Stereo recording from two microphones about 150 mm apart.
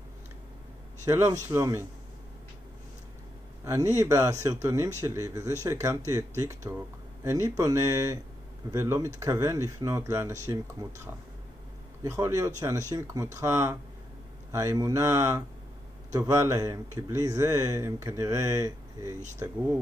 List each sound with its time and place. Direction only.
1.0 s speech: 15° right (ahead or behind)
3.6 s speech: 15° right (ahead or behind)
12.0 s speech: 20° right (ahead or behind)